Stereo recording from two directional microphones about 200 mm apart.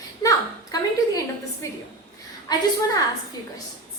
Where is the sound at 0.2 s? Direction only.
15° left (ahead or behind).